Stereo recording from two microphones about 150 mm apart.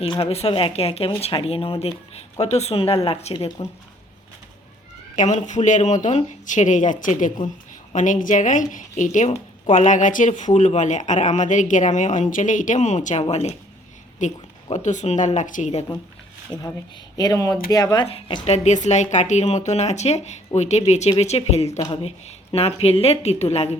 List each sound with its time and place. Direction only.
0.0 s speech: 40° left (ahead or behind)
5.1 s a woman's voice: 50° left (ahead or behind)
16.5 s speech: 25° left (ahead or behind); by 21.8 s 45° left (ahead or behind)
21.8 s speech: 30° left (ahead or behind)
22.0 s speech: 45° left (ahead or behind)